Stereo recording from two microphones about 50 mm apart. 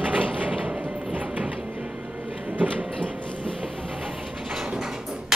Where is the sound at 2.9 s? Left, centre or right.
Right.